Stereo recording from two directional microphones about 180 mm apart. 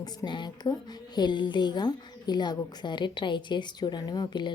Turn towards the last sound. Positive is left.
turn(degrees=25)  # may be behind; listen again after turning